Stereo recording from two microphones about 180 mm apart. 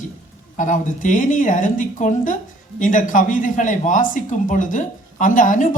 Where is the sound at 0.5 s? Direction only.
45° left (ahead or behind).